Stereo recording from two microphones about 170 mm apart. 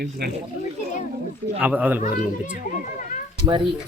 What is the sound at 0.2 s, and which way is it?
Speech, 75° right (ahead or behind).